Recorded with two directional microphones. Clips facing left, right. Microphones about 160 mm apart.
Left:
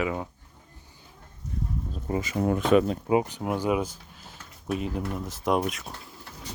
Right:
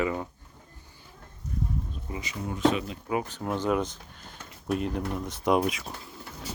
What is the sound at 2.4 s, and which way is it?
Speech, 60° left (ahead or behind).